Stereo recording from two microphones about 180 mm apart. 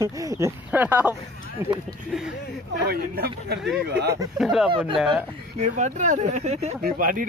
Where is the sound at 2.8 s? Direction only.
60° right (ahead or behind).